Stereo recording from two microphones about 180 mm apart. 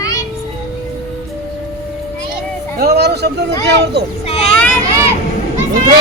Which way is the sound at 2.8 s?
65° right (ahead or behind).